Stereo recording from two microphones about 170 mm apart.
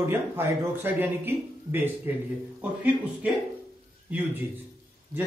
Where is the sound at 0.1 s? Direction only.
10° right (ahead or behind).